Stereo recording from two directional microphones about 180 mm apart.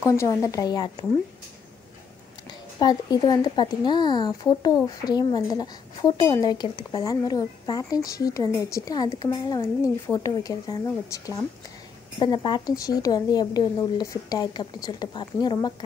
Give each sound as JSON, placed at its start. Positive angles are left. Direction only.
{"t": 0.0, "sound": "a woman's voice", "side_deg": 15}
{"t": 2.8, "sound": "a woman's voice", "side_deg": 20}